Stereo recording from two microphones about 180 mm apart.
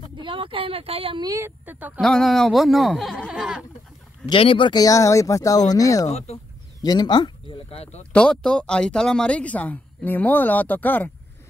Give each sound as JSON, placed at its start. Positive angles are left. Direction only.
{"t": 0.2, "sound": "a woman's voice", "side_deg": -30}
{"t": 2.0, "sound": "speech", "side_deg": 5}
{"t": 4.3, "sound": "speech", "side_deg": 30}
{"t": 8.0, "sound": "speech", "side_deg": 5}